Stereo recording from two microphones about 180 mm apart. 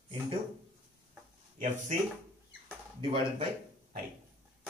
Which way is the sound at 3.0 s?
30° right (ahead or behind).